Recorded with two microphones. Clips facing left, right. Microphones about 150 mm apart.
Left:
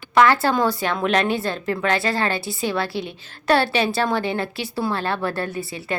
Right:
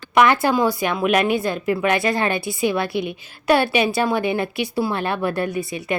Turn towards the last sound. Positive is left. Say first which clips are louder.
# right 4 dB
turn(degrees=-15)  # may be behind; listen again after turning